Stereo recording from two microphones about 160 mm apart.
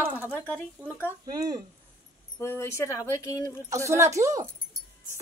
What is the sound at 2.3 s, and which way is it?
A woman's voice, 15° left (ahead or behind).